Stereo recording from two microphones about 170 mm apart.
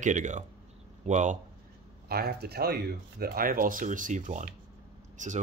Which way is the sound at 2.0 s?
65° right (ahead or behind).